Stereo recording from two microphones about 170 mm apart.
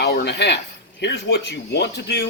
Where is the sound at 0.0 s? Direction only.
75° left (ahead or behind).